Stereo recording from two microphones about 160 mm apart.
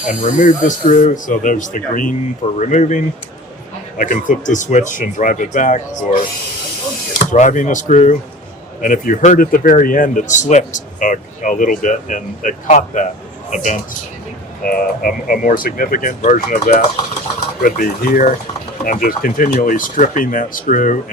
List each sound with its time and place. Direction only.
0.1 s speech: 55° left (ahead or behind)
7.3 s speech: 50° left (ahead or behind)
14.8 s speech: 65° left (ahead or behind); by 16.8 s 50° left (ahead or behind)
17.6 s speech: 65° left (ahead or behind)